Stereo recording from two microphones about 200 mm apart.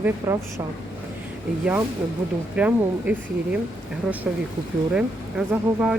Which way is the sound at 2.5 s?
5° right (ahead or behind).